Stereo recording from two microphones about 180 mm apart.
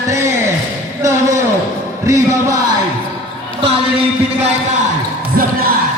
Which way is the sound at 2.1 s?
20° right (ahead or behind).